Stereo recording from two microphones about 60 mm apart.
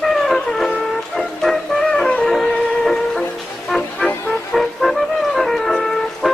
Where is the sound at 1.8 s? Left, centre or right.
Centre.